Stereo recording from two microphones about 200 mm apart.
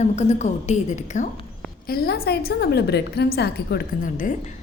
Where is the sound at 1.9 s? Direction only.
50° left (ahead or behind).